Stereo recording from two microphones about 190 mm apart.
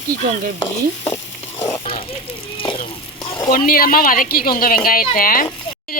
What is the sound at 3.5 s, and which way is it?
A woman's voice, 50° left (ahead or behind).